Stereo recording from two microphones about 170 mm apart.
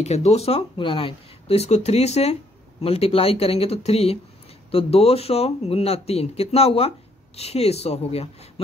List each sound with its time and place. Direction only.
0.0 s speech: 40° left (ahead or behind)